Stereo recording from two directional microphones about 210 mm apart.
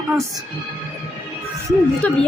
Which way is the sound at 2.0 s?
5° left (ahead or behind).